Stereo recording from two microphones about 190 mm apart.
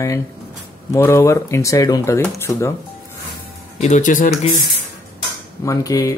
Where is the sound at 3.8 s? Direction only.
40° left (ahead or behind).